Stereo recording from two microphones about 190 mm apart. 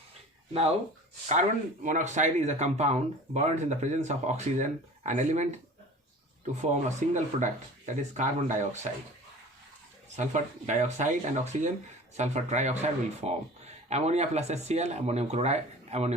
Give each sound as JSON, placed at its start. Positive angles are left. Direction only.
{"t": 1.3, "sound": "speech", "side_deg": -40}
{"t": 6.6, "sound": "speech", "side_deg": -40}
{"t": 10.2, "sound": "speech", "side_deg": -40}